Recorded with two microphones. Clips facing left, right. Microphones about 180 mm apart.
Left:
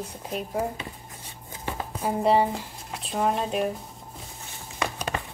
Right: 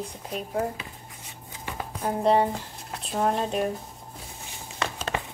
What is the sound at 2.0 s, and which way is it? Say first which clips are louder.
Speech: even; 5° left (ahead or behind).